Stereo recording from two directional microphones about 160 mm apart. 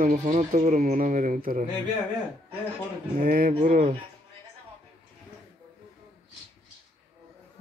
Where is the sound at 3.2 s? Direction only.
60° right (ahead or behind).